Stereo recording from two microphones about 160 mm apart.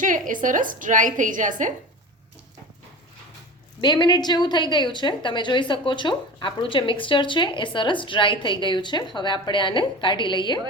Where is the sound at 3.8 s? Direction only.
30° left (ahead or behind).